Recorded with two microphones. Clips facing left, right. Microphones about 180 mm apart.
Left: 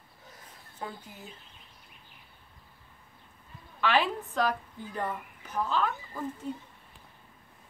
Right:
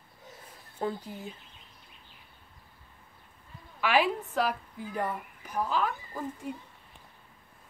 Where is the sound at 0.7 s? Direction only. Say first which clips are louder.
Right 8 dB; 35° right (ahead or behind).